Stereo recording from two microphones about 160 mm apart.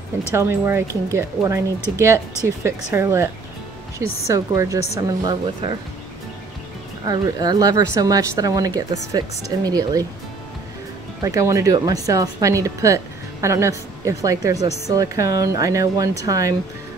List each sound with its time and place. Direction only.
0.3 s speech: 15° right (ahead or behind)
4.3 s speech: 20° right (ahead or behind)
7.1 s speech: 25° right (ahead or behind)
11.2 s speech: 20° right (ahead or behind)